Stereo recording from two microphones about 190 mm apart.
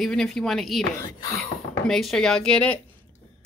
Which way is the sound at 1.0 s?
15° left (ahead or behind).